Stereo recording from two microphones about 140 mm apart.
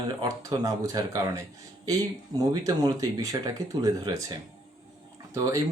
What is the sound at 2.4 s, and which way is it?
Speech, 25° right (ahead or behind).